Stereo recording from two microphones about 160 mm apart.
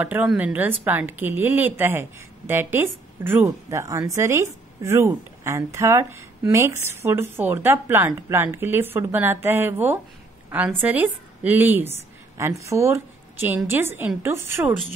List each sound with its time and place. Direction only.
0.0 s a woman's voice: 10° right (ahead or behind)